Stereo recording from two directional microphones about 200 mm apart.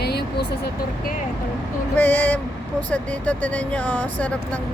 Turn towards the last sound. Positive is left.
turn(degrees=5)  # may be behind; listen again after turning